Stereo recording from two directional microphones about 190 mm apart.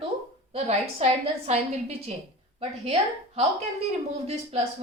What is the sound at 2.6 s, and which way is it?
A woman's voice, 30° right (ahead or behind).